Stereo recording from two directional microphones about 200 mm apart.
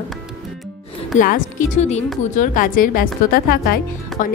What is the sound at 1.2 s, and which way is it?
A woman's voice, 40° left (ahead or behind).